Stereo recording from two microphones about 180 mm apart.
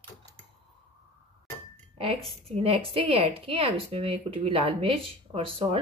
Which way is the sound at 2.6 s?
30° right (ahead or behind).